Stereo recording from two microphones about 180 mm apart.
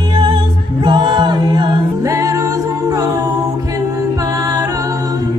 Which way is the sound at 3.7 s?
20° right (ahead or behind).